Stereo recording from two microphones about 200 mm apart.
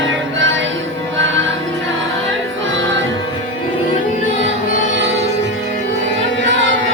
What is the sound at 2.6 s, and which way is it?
Music, 70° right (ahead or behind).